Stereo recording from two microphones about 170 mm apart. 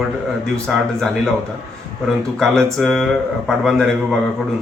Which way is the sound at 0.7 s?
5° left (ahead or behind).